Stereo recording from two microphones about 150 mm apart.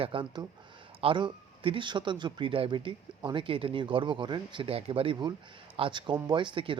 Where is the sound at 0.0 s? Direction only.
35° right (ahead or behind).